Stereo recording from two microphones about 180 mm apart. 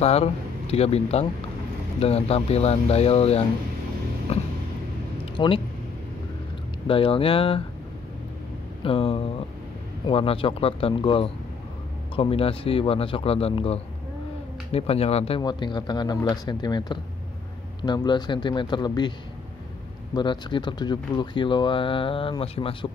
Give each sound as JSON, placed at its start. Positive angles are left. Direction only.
{"t": 0.0, "sound": "speech", "side_deg": 35}
{"t": 4.3, "sound": "a sound", "side_deg": 35}
{"t": 6.9, "sound": "speech", "side_deg": 30}
{"t": 8.8, "sound": "speech", "side_deg": 30}
{"t": 20.2, "sound": "speech", "side_deg": 25}